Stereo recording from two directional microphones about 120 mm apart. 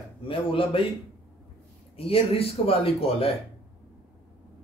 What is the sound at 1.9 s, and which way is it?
Speech, 50° left (ahead or behind).